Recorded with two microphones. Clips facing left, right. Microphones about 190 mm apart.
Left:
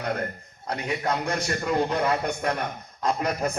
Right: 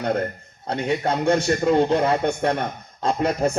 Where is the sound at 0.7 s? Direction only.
30° right (ahead or behind).